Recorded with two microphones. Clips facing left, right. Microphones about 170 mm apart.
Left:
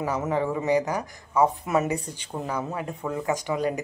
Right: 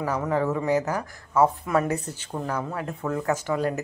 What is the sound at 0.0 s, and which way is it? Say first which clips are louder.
Speech: right 1 dB; 10° left (ahead or behind).